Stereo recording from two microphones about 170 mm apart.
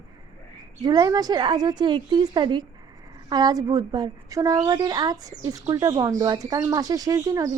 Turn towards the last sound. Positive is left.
turn(degrees=-20)  # may be behind; listen again after turning